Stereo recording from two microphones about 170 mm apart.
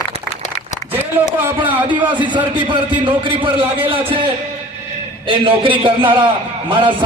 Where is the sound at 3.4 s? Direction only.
30° right (ahead or behind).